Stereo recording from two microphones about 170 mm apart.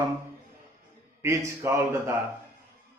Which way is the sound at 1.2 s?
15° right (ahead or behind).